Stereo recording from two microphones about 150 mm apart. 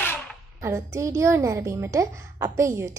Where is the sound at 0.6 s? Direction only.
20° right (ahead or behind).